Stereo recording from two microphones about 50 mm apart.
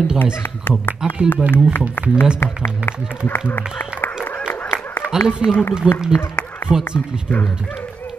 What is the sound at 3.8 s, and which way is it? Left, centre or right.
Speech, left.